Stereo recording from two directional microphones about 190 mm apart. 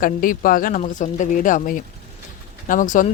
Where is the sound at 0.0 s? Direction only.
45° left (ahead or behind).